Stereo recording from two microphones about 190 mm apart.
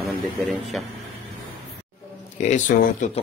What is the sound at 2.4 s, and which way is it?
Speech, 40° left (ahead or behind).